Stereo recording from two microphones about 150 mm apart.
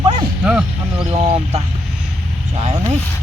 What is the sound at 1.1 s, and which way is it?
Speech, 45° right (ahead or behind).